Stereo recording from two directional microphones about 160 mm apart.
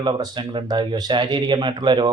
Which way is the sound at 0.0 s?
30° right (ahead or behind).